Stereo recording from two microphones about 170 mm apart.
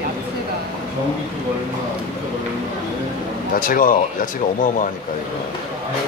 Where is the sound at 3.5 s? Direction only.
55° left (ahead or behind).